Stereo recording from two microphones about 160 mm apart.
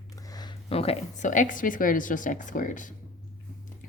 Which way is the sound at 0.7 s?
40° left (ahead or behind).